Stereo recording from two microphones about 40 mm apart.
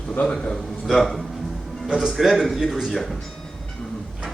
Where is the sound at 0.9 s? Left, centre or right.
Centre.